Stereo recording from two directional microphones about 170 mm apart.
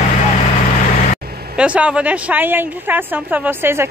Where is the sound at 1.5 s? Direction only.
5° right (ahead or behind).